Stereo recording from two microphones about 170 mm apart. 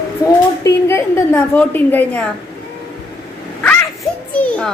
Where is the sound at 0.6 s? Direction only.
15° left (ahead or behind).